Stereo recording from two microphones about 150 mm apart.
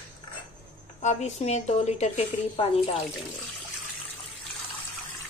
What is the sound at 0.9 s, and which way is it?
A woman's voice, 45° left (ahead or behind).